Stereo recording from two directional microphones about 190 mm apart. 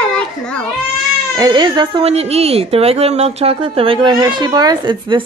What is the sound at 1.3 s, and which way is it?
Speech, 20° right (ahead or behind).